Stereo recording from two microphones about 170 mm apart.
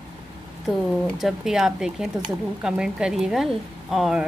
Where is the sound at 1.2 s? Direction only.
Centre (ahead or behind).